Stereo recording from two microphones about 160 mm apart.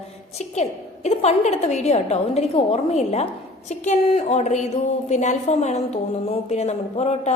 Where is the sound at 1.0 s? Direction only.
45° left (ahead or behind).